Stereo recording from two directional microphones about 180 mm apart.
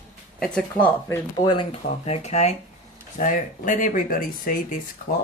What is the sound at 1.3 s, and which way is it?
Speech, 25° left (ahead or behind).